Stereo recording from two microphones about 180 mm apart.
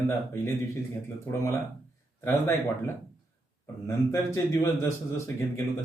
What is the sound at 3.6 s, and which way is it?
A man's voice, 15° left (ahead or behind).